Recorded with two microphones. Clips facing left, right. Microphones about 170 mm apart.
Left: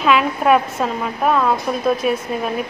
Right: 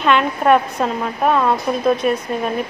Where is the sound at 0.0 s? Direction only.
5° left (ahead or behind).